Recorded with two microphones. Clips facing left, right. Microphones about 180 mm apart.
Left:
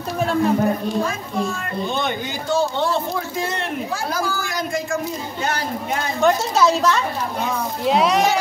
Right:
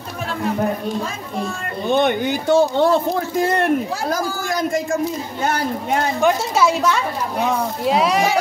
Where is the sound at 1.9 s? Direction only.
60° right (ahead or behind).